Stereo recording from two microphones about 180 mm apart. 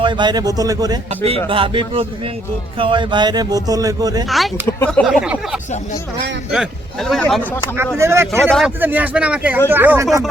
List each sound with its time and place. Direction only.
0.0 s speech: 25° right (ahead or behind)
4.3 s a man's voice: centre (ahead or behind)
5.0 s a man's voice: 5° right (ahead or behind)
7.9 s speech: 15° right (ahead or behind)
8.4 s a man's voice: centre (ahead or behind)
8.8 s speech: 10° right (ahead or behind)